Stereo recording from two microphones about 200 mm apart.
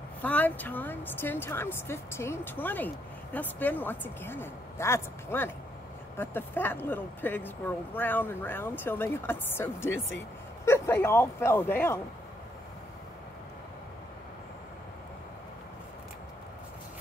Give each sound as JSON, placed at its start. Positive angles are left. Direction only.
{"t": 0.2, "sound": "speech", "side_deg": 10}
{"t": 9.9, "sound": "speech", "side_deg": 75}
{"t": 10.6, "sound": "speech", "side_deg": 10}